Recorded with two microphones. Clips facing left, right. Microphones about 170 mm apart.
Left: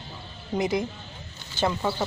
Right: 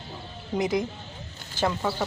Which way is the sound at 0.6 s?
Centre (ahead or behind).